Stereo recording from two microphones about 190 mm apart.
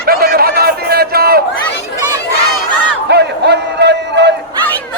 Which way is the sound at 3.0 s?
60° right (ahead or behind).